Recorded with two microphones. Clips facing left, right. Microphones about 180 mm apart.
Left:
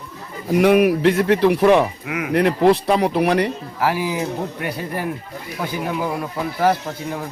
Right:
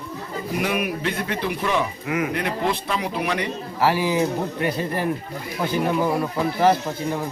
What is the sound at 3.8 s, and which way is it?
Speech, 10° left (ahead or behind).